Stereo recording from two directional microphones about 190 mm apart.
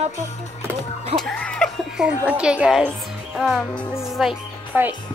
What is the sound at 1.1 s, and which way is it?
A woman's voice, 5° left (ahead or behind).